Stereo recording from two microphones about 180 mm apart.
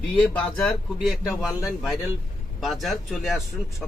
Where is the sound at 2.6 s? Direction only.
Centre (ahead or behind).